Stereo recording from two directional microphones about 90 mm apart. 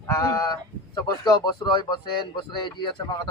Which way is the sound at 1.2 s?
55° left (ahead or behind).